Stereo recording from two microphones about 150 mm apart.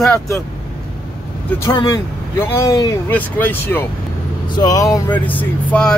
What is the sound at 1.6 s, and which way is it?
Speech, 20° left (ahead or behind).